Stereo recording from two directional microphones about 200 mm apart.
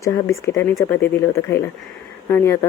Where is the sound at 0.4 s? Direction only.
15° left (ahead or behind).